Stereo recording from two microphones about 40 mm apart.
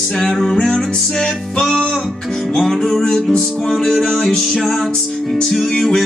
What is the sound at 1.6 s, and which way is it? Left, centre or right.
Music, centre.